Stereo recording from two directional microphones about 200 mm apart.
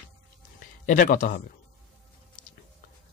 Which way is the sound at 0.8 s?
40° left (ahead or behind).